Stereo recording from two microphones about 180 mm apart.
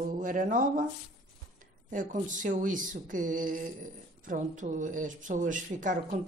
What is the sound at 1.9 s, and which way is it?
Speech, 45° right (ahead or behind).